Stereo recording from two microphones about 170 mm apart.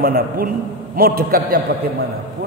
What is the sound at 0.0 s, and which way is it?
A man's voice, 60° right (ahead or behind).